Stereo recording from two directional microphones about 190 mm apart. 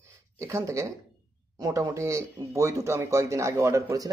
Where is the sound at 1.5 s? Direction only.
20° right (ahead or behind).